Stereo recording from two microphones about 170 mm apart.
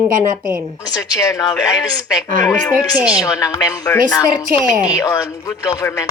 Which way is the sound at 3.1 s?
20° left (ahead or behind).